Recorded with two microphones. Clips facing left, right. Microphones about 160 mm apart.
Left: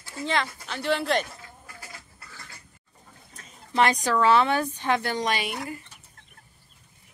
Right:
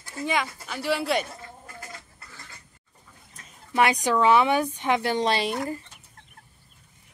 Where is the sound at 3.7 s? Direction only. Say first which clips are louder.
Right 1 dB; 10° right (ahead or behind); by 5.7 s 35° right (ahead or behind).